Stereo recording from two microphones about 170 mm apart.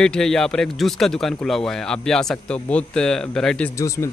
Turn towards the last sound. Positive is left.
turn(degrees=20)  # may be behind; listen again after turning